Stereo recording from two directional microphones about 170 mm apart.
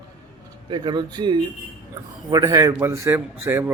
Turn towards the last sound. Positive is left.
turn(degrees=-15)  # may be behind; listen again after turning